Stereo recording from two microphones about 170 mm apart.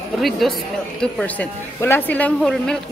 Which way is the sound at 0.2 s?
Centre (ahead or behind).